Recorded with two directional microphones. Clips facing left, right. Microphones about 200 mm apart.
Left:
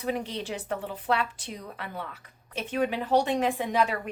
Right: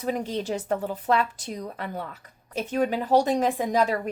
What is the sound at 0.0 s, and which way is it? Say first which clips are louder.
A woman's voice: right 3 dB; 40° right (ahead or behind).